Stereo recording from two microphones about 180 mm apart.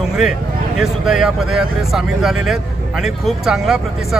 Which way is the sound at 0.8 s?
Centre (ahead or behind).